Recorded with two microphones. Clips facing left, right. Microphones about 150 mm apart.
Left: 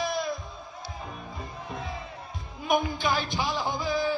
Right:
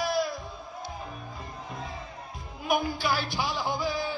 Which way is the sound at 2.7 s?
5° right (ahead or behind).